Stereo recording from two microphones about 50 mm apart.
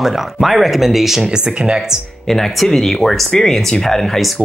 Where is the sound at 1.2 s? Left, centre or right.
Centre.